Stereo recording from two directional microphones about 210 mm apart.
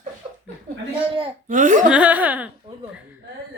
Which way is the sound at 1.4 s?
35° right (ahead or behind).